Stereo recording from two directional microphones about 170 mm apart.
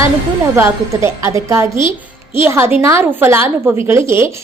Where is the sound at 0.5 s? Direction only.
15° right (ahead or behind).